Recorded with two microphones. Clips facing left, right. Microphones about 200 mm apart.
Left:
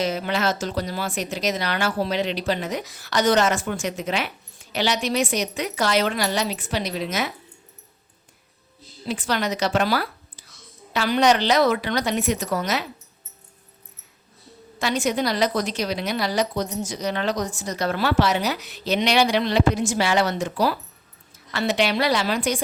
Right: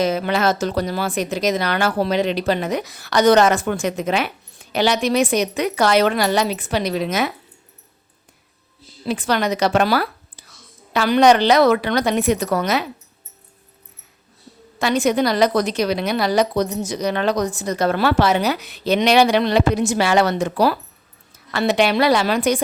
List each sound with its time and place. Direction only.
0.0 s a woman's voice: 55° right (ahead or behind)
9.0 s a woman's voice: 60° right (ahead or behind)
14.8 s a woman's voice: 60° right (ahead or behind)